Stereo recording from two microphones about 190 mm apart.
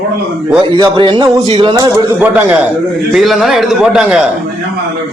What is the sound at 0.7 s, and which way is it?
A man's voice, 25° right (ahead or behind).